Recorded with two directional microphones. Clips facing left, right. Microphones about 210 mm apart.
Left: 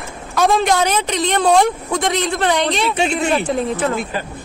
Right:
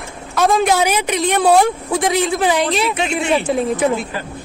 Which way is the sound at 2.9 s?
30° left (ahead or behind).